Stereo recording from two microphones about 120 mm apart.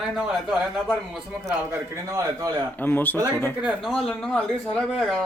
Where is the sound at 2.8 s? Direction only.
15° left (ahead or behind).